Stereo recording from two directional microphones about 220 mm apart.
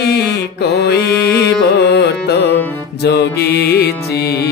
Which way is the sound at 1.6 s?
50° left (ahead or behind).